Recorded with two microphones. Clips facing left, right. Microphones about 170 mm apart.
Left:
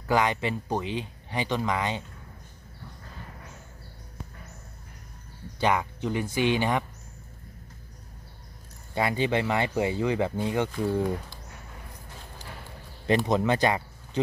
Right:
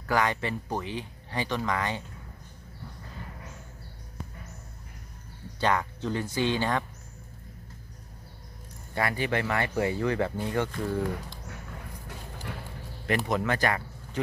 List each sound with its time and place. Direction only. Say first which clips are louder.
0.1 s speech: left 2 dB; 20° left (ahead or behind)
5.6 s speech: left 1 dB; 15° left (ahead or behind)
8.9 s speech: left 3 dB; 20° left (ahead or behind)
13.0 s speech: left 4 dB; 25° left (ahead or behind)